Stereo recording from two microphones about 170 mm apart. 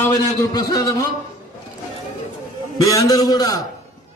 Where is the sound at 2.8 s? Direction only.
20° left (ahead or behind).